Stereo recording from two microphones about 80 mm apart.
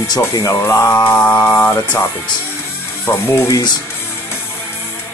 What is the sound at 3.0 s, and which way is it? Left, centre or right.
Music, left.